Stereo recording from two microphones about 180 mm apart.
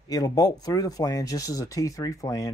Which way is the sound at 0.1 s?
20° left (ahead or behind).